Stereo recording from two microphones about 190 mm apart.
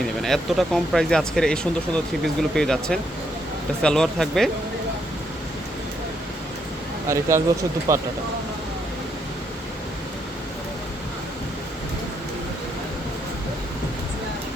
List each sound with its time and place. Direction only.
0.2 s speech: centre (ahead or behind)
7.1 s speech: 15° right (ahead or behind)